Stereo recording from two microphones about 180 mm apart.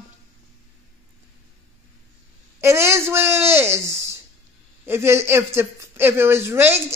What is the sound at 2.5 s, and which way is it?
A woman's voice, 15° right (ahead or behind).